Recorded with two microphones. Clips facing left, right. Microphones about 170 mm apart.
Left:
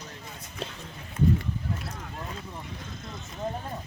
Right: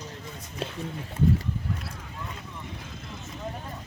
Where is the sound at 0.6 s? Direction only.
5° right (ahead or behind).